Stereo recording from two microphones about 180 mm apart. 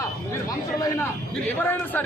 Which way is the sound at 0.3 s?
20° left (ahead or behind).